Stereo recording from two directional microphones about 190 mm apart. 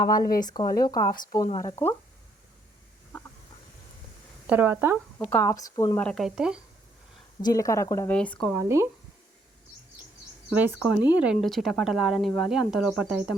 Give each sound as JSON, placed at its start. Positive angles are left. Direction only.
{"t": 0.0, "sound": "speech", "side_deg": 20}
{"t": 4.4, "sound": "speech", "side_deg": -10}
{"t": 5.2, "sound": "speech", "side_deg": 10}
{"t": 6.0, "sound": "speech", "side_deg": 5}
{"t": 7.4, "sound": "speech", "side_deg": 15}
{"t": 8.5, "sound": "speech", "side_deg": -15}
{"t": 10.5, "sound": "speech", "side_deg": -10}